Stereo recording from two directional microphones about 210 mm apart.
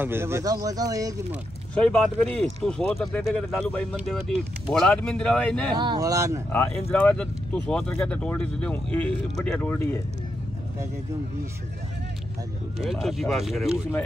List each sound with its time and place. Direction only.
0.0 s speech: 10° right (ahead or behind)
1.8 s speech: 5° left (ahead or behind)
5.8 s speech: 20° right (ahead or behind)
6.5 s speech: 10° left (ahead or behind)
12.8 s speech: centre (ahead or behind)